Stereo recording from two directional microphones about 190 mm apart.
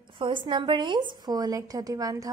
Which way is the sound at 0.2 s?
25° right (ahead or behind).